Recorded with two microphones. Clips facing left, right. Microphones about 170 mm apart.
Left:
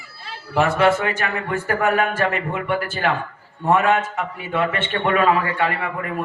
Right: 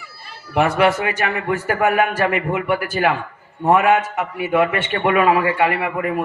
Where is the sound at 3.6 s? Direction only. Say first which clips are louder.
Right 3 dB; 15° right (ahead or behind).